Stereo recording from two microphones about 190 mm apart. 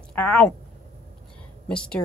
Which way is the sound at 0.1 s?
5° left (ahead or behind).